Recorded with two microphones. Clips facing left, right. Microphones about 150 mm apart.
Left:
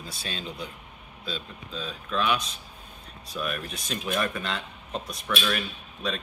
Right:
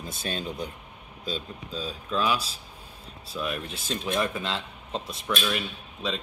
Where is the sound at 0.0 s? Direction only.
50° right (ahead or behind).